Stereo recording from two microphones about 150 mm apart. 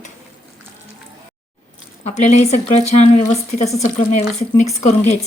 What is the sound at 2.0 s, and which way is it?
Speech, 50° left (ahead or behind).